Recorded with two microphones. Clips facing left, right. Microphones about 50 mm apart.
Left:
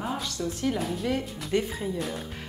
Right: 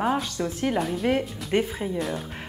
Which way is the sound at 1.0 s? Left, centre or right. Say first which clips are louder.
Right 5 dB; right.